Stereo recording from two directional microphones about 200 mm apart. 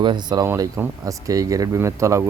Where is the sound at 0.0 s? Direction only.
20° right (ahead or behind).